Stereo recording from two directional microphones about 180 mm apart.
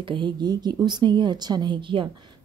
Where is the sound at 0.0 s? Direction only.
25° right (ahead or behind).